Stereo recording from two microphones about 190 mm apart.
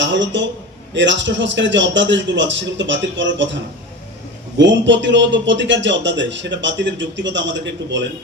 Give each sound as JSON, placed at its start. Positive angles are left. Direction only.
{"t": 0.0, "sound": "a man's voice", "side_deg": -70}